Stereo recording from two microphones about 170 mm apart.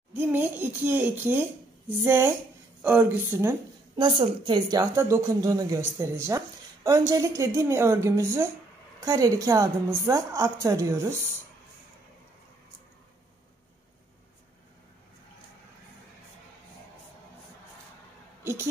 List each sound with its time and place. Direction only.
0.1 s a woman's voice: 10° right (ahead or behind)
3.9 s a woman's voice: 30° right (ahead or behind)
18.4 s a sound: 15° right (ahead or behind)